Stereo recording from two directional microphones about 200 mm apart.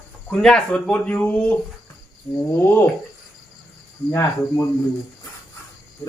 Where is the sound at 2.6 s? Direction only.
10° left (ahead or behind).